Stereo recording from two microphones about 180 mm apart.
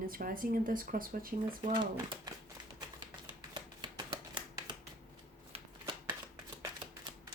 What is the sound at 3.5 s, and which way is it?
Shuffling cards, 25° right (ahead or behind).